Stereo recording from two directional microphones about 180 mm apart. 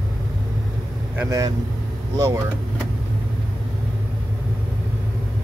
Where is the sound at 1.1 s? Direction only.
20° right (ahead or behind).